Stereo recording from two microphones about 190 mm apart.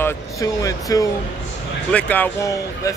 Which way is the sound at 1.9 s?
5° left (ahead or behind).